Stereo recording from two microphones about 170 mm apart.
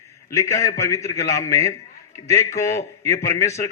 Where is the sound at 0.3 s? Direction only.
20° left (ahead or behind).